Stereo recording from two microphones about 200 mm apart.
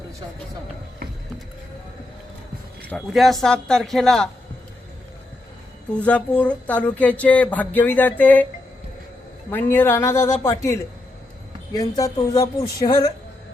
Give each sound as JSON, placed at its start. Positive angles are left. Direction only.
{"t": 2.9, "sound": "speech", "side_deg": 0}
{"t": 6.0, "sound": "speech", "side_deg": 5}
{"t": 9.5, "sound": "speech", "side_deg": 10}